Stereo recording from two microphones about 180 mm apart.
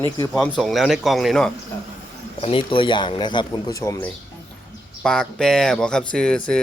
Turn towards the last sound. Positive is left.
turn(degrees=5)  # may be behind; listen again after turning